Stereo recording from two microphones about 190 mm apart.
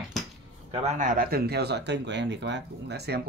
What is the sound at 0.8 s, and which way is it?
Speech, 45° right (ahead or behind).